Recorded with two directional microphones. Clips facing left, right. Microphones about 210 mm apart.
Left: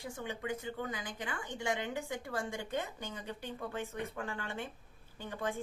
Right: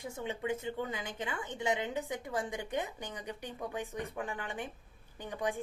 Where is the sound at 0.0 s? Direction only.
20° right (ahead or behind).